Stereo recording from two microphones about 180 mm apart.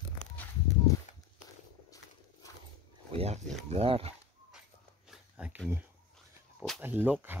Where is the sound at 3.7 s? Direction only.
30° right (ahead or behind).